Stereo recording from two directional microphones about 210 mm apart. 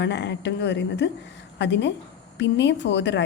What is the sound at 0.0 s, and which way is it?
A woman's voice, 55° left (ahead or behind).